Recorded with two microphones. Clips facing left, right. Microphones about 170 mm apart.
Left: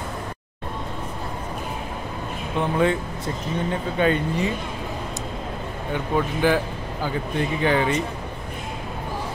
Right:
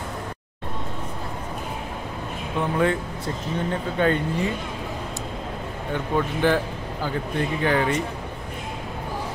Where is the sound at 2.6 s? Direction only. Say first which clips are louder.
Left 1 dB; 20° left (ahead or behind).